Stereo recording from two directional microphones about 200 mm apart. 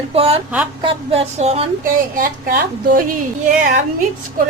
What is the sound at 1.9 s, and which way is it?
A woman's voice, 45° right (ahead or behind).